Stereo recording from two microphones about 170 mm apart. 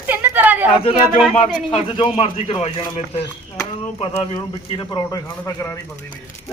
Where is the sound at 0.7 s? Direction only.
35° left (ahead or behind); by 6.1 s 15° left (ahead or behind).